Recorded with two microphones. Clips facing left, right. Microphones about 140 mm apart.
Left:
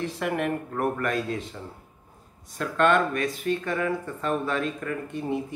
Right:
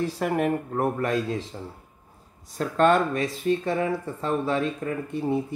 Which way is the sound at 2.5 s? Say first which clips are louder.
Right 2 dB; 35° right (ahead or behind).